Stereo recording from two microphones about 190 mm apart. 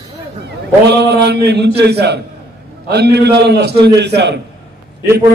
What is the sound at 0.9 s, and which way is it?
Speech, 60° right (ahead or behind).